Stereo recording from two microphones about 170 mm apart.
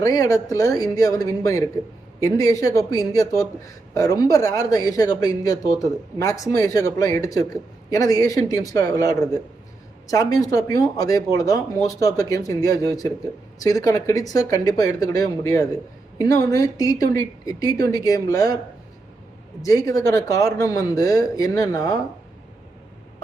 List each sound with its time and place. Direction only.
0.0 s a man's voice: 20° left (ahead or behind)
19.6 s a man's voice: 20° left (ahead or behind)